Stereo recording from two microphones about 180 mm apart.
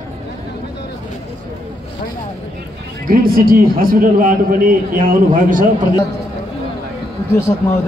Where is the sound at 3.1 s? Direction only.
50° right (ahead or behind).